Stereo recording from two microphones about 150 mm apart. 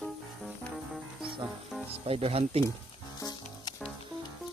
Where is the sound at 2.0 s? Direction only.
40° right (ahead or behind).